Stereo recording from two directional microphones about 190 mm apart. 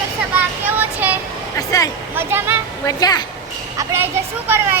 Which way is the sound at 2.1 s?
10° right (ahead or behind).